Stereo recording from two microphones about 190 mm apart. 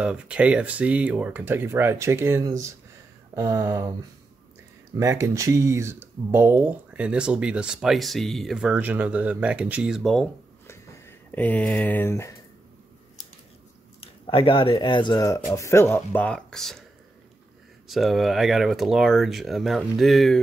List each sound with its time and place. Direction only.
0.0 s speech: 5° right (ahead or behind)
4.9 s speech: 15° right (ahead or behind)
10.7 s a sound: 10° left (ahead or behind)
14.0 s speech: 30° left (ahead or behind); by 16.8 s centre (ahead or behind)
17.8 s speech: centre (ahead or behind)